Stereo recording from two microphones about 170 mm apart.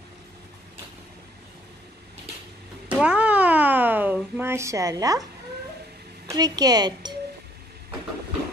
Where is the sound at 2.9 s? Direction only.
5° right (ahead or behind).